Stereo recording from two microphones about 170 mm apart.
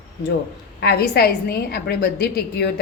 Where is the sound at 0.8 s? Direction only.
70° left (ahead or behind).